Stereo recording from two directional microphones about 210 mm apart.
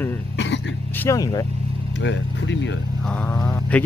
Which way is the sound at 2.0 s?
60° left (ahead or behind).